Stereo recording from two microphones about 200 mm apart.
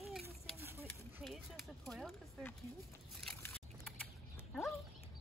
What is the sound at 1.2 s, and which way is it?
Speech, centre (ahead or behind).